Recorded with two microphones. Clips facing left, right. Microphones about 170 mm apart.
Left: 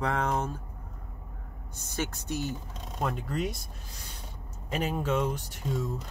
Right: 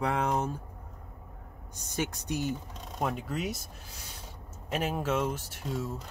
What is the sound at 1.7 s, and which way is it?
Speech, 15° right (ahead or behind).